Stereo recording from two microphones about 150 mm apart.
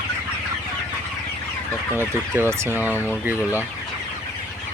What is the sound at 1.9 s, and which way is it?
Fowl, 15° right (ahead or behind).